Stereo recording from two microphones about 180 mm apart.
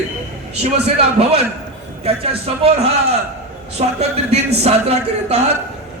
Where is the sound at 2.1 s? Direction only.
30° right (ahead or behind).